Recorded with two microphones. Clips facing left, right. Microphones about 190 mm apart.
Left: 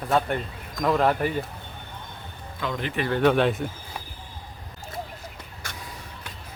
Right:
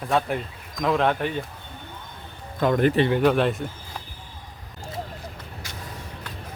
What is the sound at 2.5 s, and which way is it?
Speech, 50° right (ahead or behind).